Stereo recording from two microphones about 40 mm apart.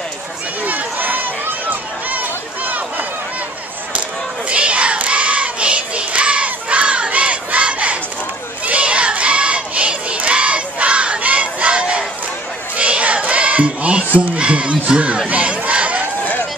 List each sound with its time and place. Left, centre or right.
0.7 s run: right
4.5 s child singing: right
8.6 s crowd: right
12.7 s child singing: right
15.2 s battle cry: right